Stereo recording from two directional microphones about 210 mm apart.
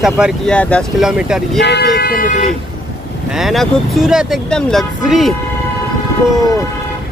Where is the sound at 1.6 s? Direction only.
50° left (ahead or behind).